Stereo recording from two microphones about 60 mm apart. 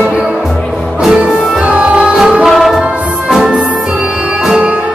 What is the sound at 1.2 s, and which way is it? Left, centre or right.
Music, centre.